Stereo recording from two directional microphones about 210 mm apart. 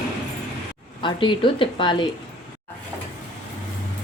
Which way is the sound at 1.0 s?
25° left (ahead or behind).